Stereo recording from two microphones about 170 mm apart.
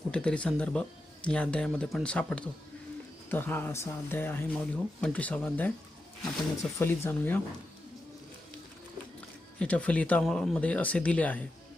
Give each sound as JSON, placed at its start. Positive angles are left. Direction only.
{"t": 0.1, "sound": "speech", "side_deg": 5}
{"t": 6.7, "sound": "speech", "side_deg": 15}
{"t": 9.6, "sound": "speech", "side_deg": 5}